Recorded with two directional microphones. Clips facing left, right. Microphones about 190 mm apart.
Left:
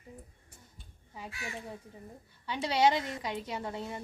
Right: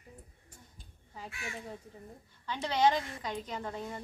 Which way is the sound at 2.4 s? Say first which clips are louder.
Left 1 dB; 10° left (ahead or behind).